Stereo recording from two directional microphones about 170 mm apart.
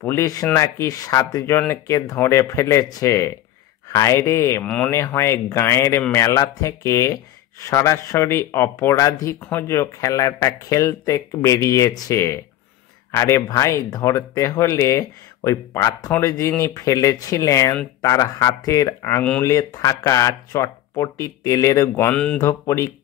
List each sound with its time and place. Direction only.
0.0 s speech: 15° left (ahead or behind)
22.4 s speech: 15° left (ahead or behind)